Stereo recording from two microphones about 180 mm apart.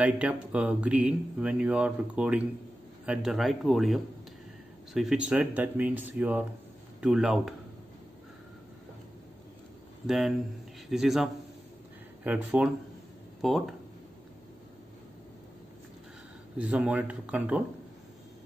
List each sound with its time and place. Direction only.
0.0 s speech: 5° right (ahead or behind)
10.0 s speech: centre (ahead or behind)
16.5 s speech: 5° right (ahead or behind)